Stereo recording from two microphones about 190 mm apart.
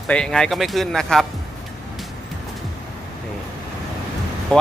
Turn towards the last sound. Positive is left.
turn(degrees=5)  # may be behind; listen again after turning